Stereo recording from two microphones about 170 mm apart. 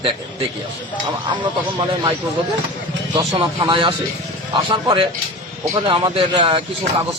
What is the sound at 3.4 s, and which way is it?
A man's voice, 30° right (ahead or behind).